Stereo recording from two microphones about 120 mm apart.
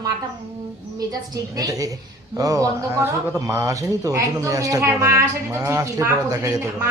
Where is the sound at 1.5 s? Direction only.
30° right (ahead or behind).